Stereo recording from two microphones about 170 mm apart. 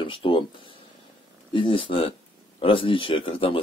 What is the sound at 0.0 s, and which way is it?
Speech, 30° left (ahead or behind).